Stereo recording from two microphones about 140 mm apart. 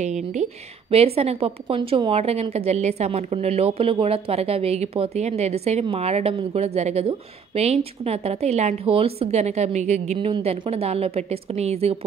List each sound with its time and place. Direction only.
0.0 s a woman's voice: 55° right (ahead or behind)
10.1 s a woman's voice: 40° right (ahead or behind)